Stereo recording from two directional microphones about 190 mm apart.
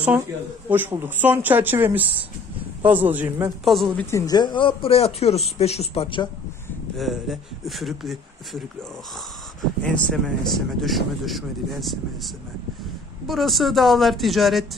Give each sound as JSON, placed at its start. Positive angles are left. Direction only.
{"t": 0.7, "sound": "speech", "side_deg": -10}
{"t": 3.6, "sound": "speech", "side_deg": 0}
{"t": 4.1, "sound": "a man's voice", "side_deg": 20}
{"t": 7.0, "sound": "speech", "side_deg": 0}
{"t": 9.8, "sound": "speech", "side_deg": 5}
{"t": 13.3, "sound": "speech", "side_deg": 0}